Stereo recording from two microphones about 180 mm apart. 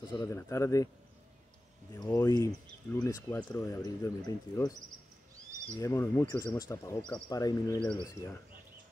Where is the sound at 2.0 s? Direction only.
20° left (ahead or behind).